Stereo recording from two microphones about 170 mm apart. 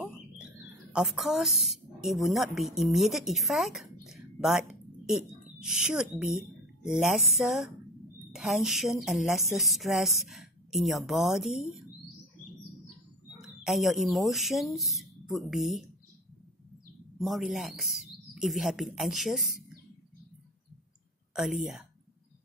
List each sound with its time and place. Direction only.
0.9 s a woman's voice: 5° right (ahead or behind)
13.4 s speech: centre (ahead or behind)
17.2 s a woman's voice: centre (ahead or behind)
21.4 s a woman's voice: centre (ahead or behind)